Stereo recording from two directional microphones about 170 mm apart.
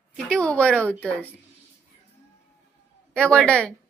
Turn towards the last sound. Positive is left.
turn(degrees=5)  # may be behind; listen again after turning